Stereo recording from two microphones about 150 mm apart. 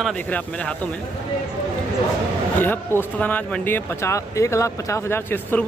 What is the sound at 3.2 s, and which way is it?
Speech, 10° left (ahead or behind).